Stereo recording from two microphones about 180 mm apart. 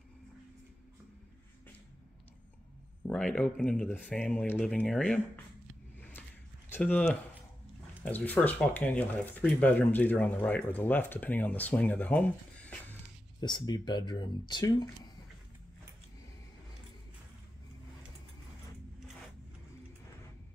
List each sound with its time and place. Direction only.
3.1 s speech: 5° left (ahead or behind)
5.9 s a sound: 10° left (ahead or behind)
6.7 s speech: 10° left (ahead or behind)
13.4 s speech: 25° left (ahead or behind)